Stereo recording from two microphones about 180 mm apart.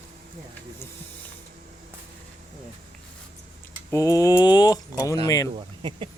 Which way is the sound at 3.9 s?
20° left (ahead or behind).